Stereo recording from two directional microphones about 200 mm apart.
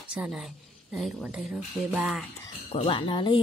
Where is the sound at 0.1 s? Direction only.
5° right (ahead or behind).